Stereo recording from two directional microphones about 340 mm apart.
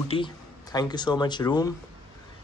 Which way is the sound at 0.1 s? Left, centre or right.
Centre.